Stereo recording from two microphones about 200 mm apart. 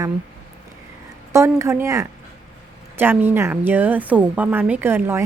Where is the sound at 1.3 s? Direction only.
15° right (ahead or behind).